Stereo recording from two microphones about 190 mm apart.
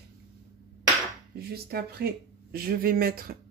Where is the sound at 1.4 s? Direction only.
55° right (ahead or behind).